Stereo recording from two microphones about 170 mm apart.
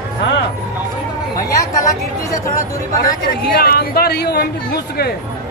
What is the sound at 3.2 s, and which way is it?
Speech, 60° left (ahead or behind).